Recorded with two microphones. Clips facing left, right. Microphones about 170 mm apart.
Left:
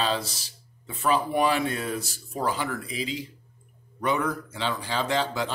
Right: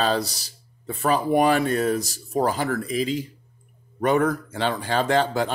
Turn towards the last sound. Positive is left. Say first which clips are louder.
# right 5 dB
turn(degrees=-50)  # may be behind; listen again after turning